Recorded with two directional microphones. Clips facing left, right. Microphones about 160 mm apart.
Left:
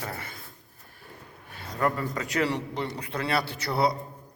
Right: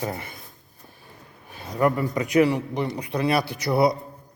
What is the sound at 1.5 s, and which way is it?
A man's voice, 15° right (ahead or behind).